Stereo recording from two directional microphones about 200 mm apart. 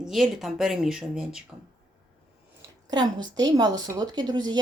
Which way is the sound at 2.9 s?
20° right (ahead or behind).